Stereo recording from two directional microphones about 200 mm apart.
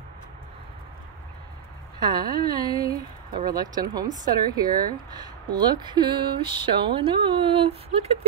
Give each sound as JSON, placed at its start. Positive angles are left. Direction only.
{"t": 2.0, "sound": "speech", "side_deg": -20}